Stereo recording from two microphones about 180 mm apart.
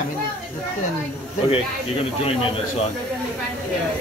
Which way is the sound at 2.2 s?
35° left (ahead or behind).